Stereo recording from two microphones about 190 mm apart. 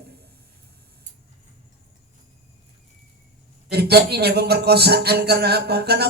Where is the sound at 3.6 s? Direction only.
60° right (ahead or behind).